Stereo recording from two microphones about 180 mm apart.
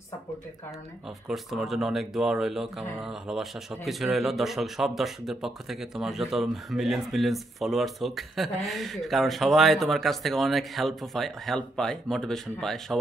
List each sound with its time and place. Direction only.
1.2 s speech: centre (ahead or behind)